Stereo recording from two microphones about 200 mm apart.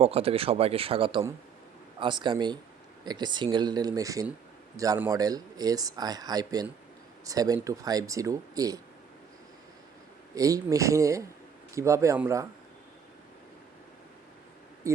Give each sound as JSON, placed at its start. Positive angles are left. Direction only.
{"t": 0.0, "sound": "speech", "side_deg": -30}
{"t": 10.3, "sound": "speech", "side_deg": -15}
{"t": 14.8, "sound": "speech", "side_deg": -15}